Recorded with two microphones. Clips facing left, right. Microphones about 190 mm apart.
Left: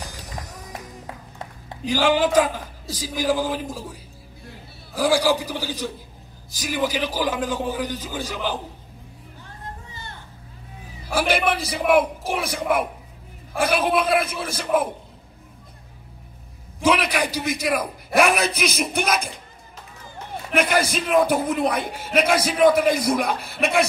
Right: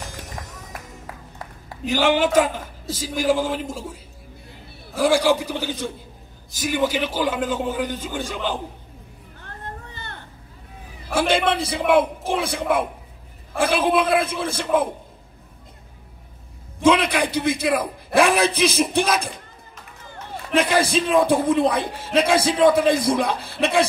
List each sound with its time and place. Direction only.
1.9 s a man's voice: 20° right (ahead or behind)
4.9 s a man's voice: 25° right (ahead or behind)
9.4 s vehicle: 60° right (ahead or behind)
11.1 s a man's voice: 25° right (ahead or behind)
16.9 s a man's voice: 25° right (ahead or behind)
20.5 s a man's voice: 30° right (ahead or behind)